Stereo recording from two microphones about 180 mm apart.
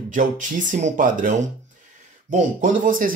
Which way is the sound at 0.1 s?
45° right (ahead or behind).